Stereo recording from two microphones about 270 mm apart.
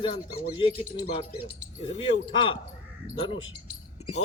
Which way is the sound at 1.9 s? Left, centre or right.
Centre.